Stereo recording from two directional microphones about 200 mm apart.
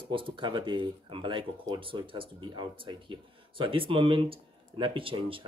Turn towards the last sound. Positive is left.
turn(degrees=-25)  # may be behind; listen again after turning